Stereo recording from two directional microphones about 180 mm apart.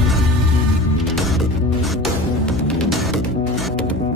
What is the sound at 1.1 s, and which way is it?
Music, centre (ahead or behind).